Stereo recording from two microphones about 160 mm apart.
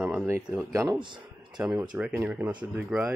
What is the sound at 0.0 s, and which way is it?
Speech, 10° right (ahead or behind).